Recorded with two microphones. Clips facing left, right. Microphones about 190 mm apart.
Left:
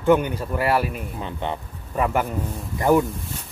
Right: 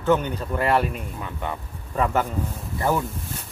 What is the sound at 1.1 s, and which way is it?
Speech, 25° left (ahead or behind).